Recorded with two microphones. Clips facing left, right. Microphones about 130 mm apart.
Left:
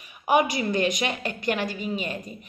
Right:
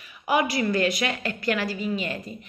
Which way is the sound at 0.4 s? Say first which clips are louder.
Even; 20° left (ahead or behind).